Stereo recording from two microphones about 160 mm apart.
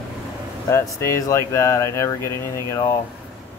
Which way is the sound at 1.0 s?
20° left (ahead or behind).